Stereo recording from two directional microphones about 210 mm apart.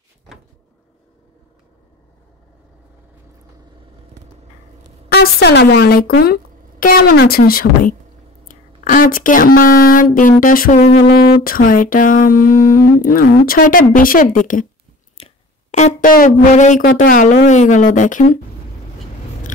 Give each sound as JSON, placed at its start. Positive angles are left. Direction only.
{"t": 5.1, "sound": "speech", "side_deg": 50}
{"t": 15.7, "sound": "speech", "side_deg": 35}